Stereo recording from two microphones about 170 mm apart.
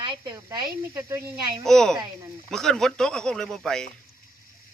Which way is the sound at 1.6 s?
5° left (ahead or behind).